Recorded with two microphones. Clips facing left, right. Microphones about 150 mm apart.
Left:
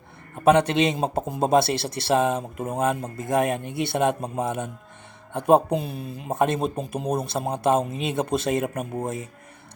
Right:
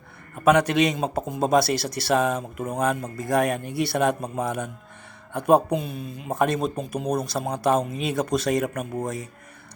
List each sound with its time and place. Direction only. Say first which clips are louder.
0.3 s speech: even; 30° left (ahead or behind)